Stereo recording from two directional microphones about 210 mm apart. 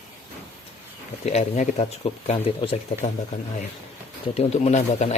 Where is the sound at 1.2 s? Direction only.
35° left (ahead or behind).